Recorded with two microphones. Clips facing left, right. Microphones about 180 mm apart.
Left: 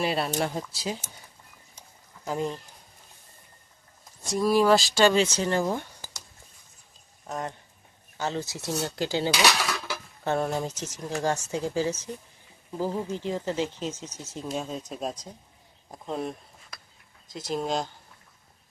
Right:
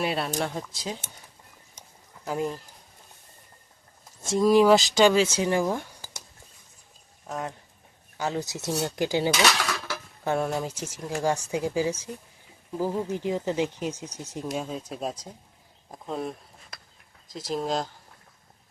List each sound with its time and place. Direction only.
0.0 s speech: centre (ahead or behind)
2.2 s speech: 5° right (ahead or behind)
4.2 s speech: 25° right (ahead or behind)
5.1 s speech: 5° right (ahead or behind)
7.3 s speech: centre (ahead or behind)
8.2 s speech: 15° right (ahead or behind)
9.3 s cutlery: 15° left (ahead or behind)
10.4 s speech: centre (ahead or behind)